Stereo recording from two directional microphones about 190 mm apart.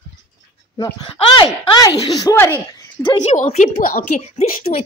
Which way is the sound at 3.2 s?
35° left (ahead or behind).